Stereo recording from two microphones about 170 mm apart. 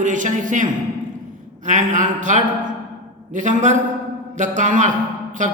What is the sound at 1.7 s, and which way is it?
A man's voice, 45° right (ahead or behind).